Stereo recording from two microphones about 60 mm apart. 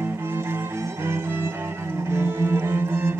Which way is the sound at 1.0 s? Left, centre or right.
Right.